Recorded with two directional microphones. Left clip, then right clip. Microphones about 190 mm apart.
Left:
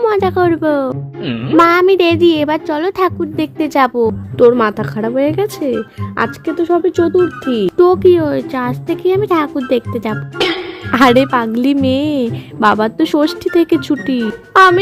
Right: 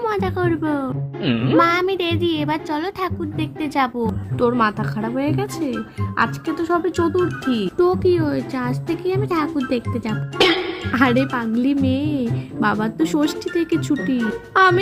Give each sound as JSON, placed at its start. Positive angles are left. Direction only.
{"t": 0.0, "sound": "speech", "side_deg": 40}
{"t": 1.2, "sound": "music", "side_deg": 0}
{"t": 1.5, "sound": "a woman's voice", "side_deg": 45}
{"t": 6.7, "sound": "a woman's voice", "side_deg": 30}
{"t": 10.3, "sound": "music", "side_deg": 0}
{"t": 10.9, "sound": "a woman's voice", "side_deg": 50}